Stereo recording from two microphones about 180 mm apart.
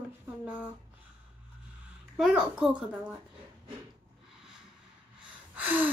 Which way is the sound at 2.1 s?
Centre (ahead or behind).